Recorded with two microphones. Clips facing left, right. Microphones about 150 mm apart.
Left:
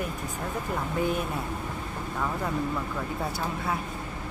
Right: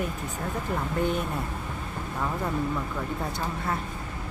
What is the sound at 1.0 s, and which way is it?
Speech, 5° left (ahead or behind).